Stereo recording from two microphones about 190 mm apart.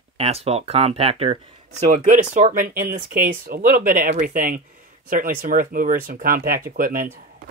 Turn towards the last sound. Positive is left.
turn(degrees=-50)  # may be behind; listen again after turning